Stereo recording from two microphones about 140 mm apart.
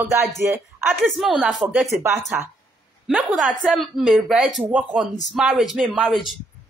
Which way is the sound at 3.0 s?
Centre (ahead or behind).